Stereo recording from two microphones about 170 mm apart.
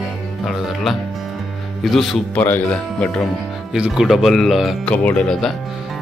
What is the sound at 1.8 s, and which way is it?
Speech, centre (ahead or behind).